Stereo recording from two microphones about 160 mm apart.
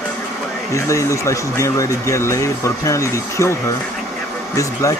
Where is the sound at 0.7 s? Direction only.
20° left (ahead or behind).